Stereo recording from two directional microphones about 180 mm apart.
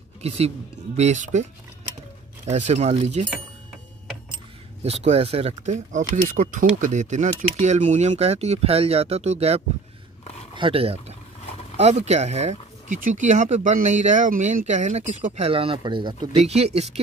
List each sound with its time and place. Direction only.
0.2 s speech: 35° right (ahead or behind)
4.8 s speech: 35° right (ahead or behind)
16.3 s speech: 35° right (ahead or behind)